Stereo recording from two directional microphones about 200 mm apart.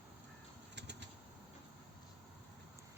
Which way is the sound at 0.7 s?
60° right (ahead or behind).